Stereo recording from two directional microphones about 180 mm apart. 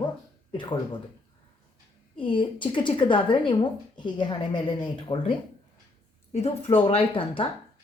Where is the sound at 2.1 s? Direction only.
30° left (ahead or behind).